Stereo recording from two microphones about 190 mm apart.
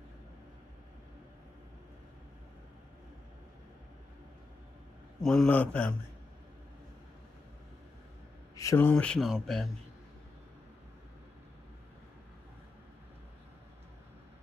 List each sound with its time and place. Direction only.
5.2 s a man's voice: 5° left (ahead or behind)
8.5 s speech: 15° left (ahead or behind)